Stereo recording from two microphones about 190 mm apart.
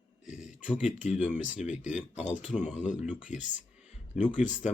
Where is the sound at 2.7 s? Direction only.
40° left (ahead or behind).